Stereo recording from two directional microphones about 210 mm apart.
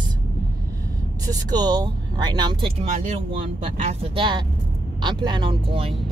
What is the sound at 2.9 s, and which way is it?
Speech, 35° right (ahead or behind).